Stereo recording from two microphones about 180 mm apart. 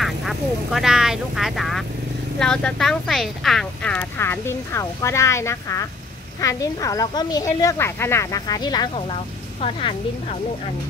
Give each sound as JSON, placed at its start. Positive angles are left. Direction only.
{"t": 0.0, "sound": "a woman's voice", "side_deg": 0}